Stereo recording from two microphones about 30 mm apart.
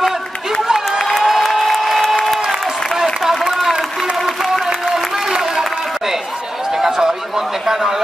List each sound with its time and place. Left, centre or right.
1.2 s applause: centre
4.6 s applause: centre
7.0 s a sound: centre